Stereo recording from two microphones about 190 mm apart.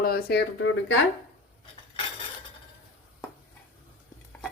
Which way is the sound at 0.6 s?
80° left.